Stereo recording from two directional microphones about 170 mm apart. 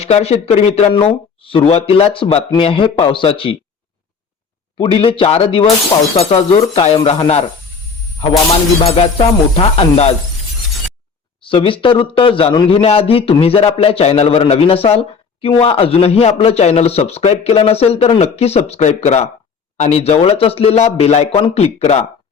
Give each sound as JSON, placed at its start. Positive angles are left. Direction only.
{"t": 0.0, "sound": "a man's voice", "side_deg": 40}
{"t": 4.8, "sound": "a man's voice", "side_deg": 35}
{"t": 8.4, "sound": "a man's voice", "side_deg": 35}
{"t": 11.3, "sound": "a man's voice", "side_deg": 30}